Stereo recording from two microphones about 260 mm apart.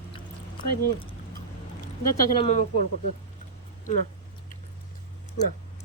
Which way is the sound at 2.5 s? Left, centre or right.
Left.